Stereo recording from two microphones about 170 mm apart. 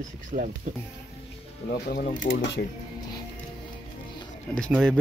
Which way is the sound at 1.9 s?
55° left (ahead or behind).